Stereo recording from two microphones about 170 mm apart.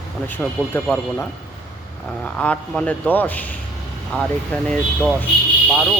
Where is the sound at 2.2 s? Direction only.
5° left (ahead or behind).